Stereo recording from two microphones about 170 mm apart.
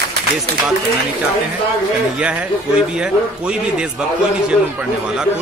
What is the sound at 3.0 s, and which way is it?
Speech, 5° right (ahead or behind).